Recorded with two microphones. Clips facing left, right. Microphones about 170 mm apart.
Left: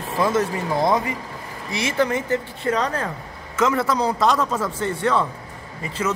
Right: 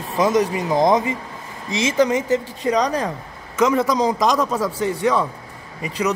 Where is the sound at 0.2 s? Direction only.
15° right (ahead or behind).